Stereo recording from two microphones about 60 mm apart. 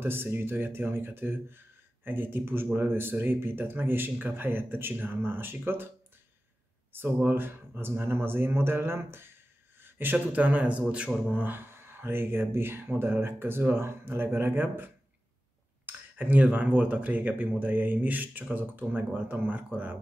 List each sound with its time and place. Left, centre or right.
0.0 s speech: right
6.9 s speech: right
9.8 s a sound: right
10.1 s speech: right
11.7 s speech: right